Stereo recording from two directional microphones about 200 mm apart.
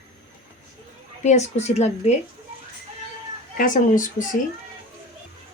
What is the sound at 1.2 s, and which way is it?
Speech, 35° left (ahead or behind).